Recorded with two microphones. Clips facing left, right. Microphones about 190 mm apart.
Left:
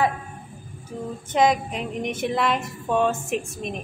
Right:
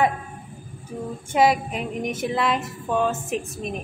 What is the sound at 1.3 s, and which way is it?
A man's voice, 10° right (ahead or behind).